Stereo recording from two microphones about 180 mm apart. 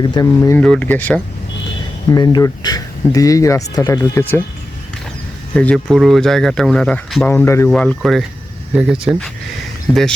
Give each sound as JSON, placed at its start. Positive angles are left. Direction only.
{"t": 0.0, "sound": "speech", "side_deg": 20}
{"t": 2.0, "sound": "speech", "side_deg": 20}
{"t": 5.5, "sound": "speech", "side_deg": 5}